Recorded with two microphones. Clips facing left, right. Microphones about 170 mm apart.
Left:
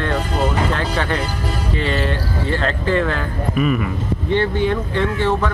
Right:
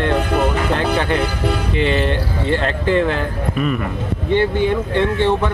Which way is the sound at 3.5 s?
5° left (ahead or behind).